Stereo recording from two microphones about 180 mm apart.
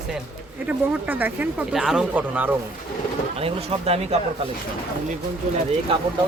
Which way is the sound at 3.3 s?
35° right (ahead or behind).